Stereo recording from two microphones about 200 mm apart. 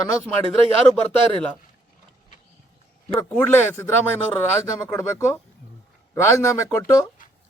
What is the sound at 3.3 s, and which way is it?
Speech, 10° left (ahead or behind).